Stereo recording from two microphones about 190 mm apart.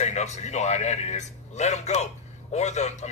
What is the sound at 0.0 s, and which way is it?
A man's voice, 35° left (ahead or behind).